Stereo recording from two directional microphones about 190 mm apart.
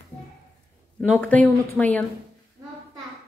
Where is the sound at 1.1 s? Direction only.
10° left (ahead or behind).